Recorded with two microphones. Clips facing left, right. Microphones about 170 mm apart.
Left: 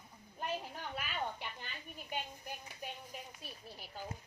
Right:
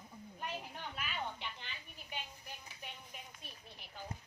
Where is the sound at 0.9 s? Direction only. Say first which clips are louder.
Left 3 dB; 45° left (ahead or behind).